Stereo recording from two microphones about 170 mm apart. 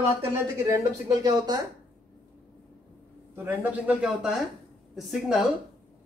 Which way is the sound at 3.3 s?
10° right (ahead or behind).